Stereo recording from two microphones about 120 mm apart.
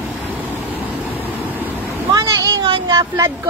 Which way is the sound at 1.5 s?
15° right (ahead or behind).